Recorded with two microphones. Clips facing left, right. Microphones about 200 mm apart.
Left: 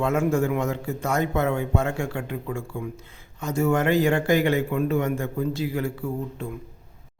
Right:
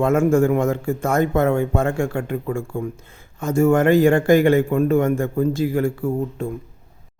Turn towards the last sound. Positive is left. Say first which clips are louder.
# right 7 dB
turn(degrees=-45)  # may be behind; listen again after turning